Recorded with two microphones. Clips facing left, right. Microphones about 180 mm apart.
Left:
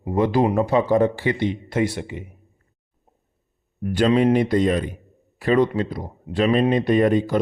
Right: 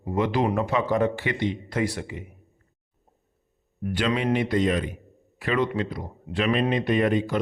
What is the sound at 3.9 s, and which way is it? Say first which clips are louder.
Speech: left 7 dB; 40° left (ahead or behind).